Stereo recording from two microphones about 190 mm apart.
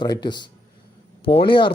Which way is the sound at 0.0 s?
25° left (ahead or behind).